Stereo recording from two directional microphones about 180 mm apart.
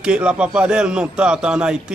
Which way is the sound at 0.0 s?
5° right (ahead or behind).